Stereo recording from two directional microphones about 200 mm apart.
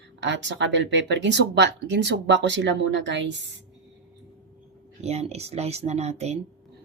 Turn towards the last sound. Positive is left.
turn(degrees=-35)  # may be behind; listen again after turning